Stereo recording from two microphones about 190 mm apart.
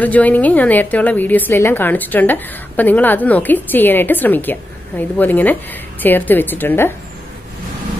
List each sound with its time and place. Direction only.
0.0 s a woman's voice: 10° left (ahead or behind)